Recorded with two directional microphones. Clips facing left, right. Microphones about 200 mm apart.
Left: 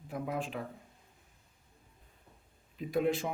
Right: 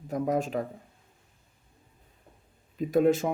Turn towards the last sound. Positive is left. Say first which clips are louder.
# right 8 dB
turn(degrees=-45)  # may be behind; listen again after turning